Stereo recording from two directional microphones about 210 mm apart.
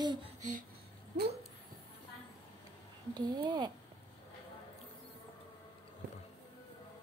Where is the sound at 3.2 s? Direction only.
20° right (ahead or behind).